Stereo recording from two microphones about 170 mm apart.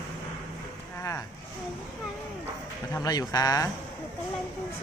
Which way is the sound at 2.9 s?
20° left (ahead or behind).